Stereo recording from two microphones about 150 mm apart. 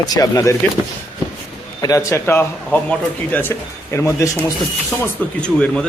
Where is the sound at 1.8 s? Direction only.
25° left (ahead or behind).